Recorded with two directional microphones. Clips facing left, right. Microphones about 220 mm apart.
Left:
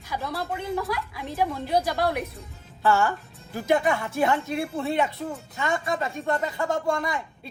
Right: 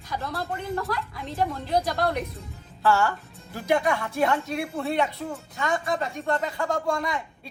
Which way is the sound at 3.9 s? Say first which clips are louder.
Even; 20° left (ahead or behind).